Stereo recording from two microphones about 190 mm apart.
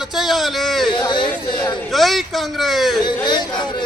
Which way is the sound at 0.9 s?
25° left (ahead or behind).